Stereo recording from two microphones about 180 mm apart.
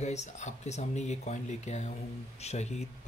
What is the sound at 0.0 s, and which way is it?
Speech, 40° left (ahead or behind).